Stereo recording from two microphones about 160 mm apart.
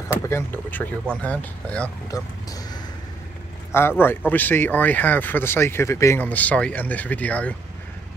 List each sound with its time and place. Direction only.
0.3 s speech: 15° left (ahead or behind)
2.1 s speech: 20° left (ahead or behind)
4.0 s speech: 10° left (ahead or behind)